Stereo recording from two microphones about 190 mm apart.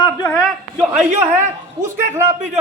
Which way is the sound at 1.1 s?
35° right (ahead or behind).